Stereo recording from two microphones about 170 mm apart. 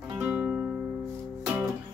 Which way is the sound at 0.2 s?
10° right (ahead or behind).